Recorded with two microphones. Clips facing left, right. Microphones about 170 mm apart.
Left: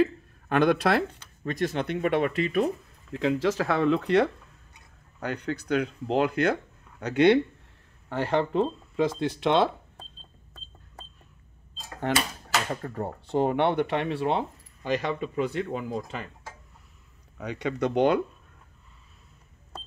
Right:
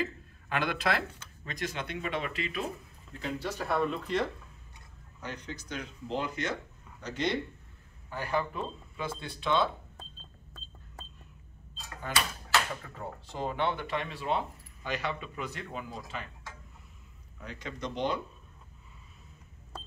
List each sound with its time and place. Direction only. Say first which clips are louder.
0.0 s speech: left 11 dB; 55° left (ahead or behind)
3.1 s speech: left 11 dB; 90° left; by 4.3 s 75° left (ahead or behind)
5.2 s speech: left 10 dB; 60° left (ahead or behind)
8.1 s speech: left 7 dB; 80° left
12.8 s speech: left 9 dB; 55° left (ahead or behind)
14.8 s speech: left 7 dB; 40° left (ahead or behind)
17.4 s speech: left 11 dB; 70° left (ahead or behind)